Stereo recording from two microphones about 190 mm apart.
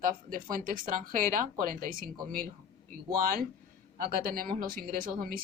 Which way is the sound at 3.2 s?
50° right (ahead or behind).